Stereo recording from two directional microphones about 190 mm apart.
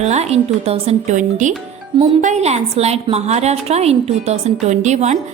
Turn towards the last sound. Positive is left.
turn(degrees=-35)  # may be behind; listen again after turning